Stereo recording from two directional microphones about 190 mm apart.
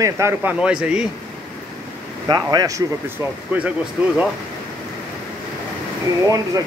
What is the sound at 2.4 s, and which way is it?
Speech, 20° right (ahead or behind).